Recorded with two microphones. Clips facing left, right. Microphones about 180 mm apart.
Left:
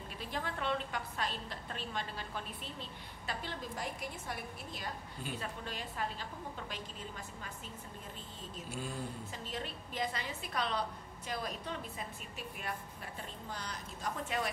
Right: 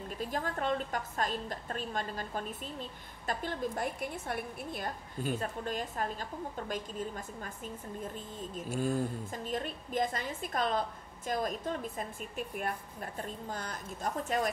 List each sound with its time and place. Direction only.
0.2 s a woman's voice: 45° right (ahead or behind)